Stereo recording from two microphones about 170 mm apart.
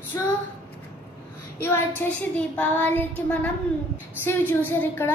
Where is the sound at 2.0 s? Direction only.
10° left (ahead or behind).